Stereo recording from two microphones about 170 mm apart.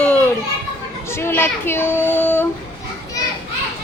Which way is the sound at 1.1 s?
15° left (ahead or behind).